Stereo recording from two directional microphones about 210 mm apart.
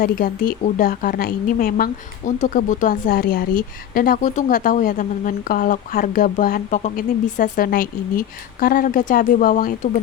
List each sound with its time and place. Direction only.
0.0 s a woman's voice: 40° left (ahead or behind)